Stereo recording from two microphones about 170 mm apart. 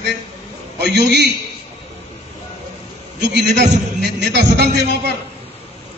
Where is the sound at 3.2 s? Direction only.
85° right.